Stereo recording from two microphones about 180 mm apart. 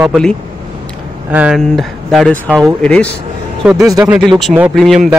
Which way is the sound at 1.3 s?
5° right (ahead or behind).